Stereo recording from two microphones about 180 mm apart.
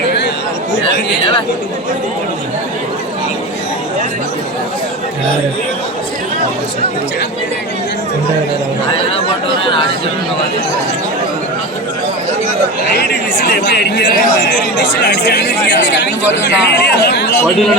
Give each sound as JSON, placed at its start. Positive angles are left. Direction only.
{"t": 12.9, "sound": "speech", "side_deg": 60}